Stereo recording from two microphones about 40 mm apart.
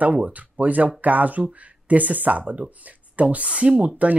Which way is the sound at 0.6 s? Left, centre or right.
Right.